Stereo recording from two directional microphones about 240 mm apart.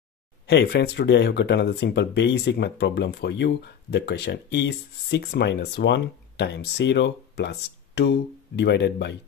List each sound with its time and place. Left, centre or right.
0.5 s speech: left